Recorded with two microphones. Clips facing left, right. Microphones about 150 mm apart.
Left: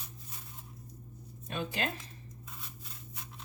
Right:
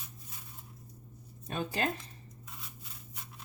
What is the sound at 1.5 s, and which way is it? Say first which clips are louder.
Speech: right 2 dB; 35° right (ahead or behind).